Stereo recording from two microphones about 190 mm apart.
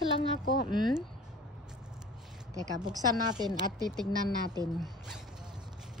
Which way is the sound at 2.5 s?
20° right (ahead or behind).